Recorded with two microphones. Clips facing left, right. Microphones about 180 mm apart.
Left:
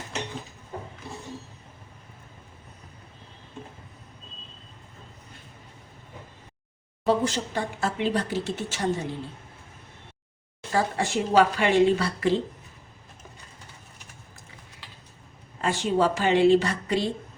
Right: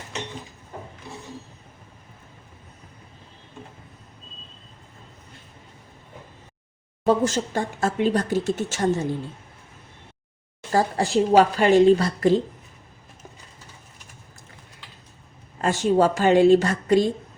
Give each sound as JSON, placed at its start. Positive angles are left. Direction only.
{"t": 7.0, "sound": "speech", "side_deg": -45}
{"t": 10.7, "sound": "a woman's voice", "side_deg": -35}
{"t": 15.6, "sound": "speech", "side_deg": -45}